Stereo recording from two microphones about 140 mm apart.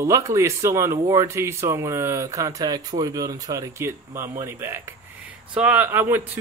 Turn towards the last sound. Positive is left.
turn(degrees=-15)  # may be behind; listen again after turning